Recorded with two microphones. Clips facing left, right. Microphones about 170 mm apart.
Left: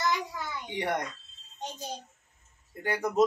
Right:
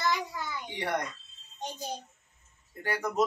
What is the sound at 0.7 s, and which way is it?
Speech, 20° left (ahead or behind).